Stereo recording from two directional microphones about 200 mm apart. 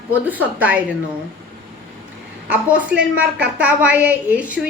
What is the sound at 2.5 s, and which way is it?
A woman's voice, 5° right (ahead or behind).